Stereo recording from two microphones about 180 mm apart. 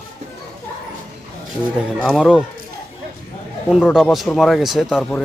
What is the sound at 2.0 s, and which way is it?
Speech, 5° right (ahead or behind).